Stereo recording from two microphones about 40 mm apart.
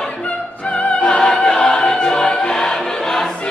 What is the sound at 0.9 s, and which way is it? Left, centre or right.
Opera, left.